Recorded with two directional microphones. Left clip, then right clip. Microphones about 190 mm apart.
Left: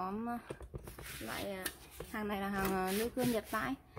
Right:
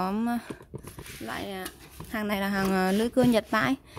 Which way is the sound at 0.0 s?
50° right (ahead or behind).